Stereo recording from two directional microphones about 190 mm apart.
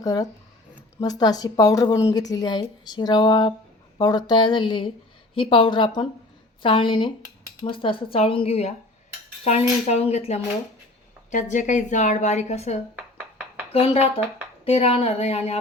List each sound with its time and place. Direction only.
0.0 s a woman's voice: 20° left (ahead or behind)